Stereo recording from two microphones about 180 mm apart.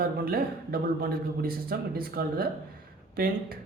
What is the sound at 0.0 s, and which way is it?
Speech, 55° right (ahead or behind).